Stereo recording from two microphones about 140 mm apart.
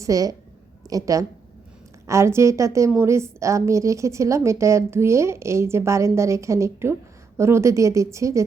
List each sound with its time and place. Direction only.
0.0 s a woman's voice: 25° right (ahead or behind)